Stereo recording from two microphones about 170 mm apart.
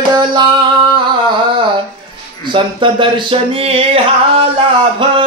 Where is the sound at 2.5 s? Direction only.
30° right (ahead or behind).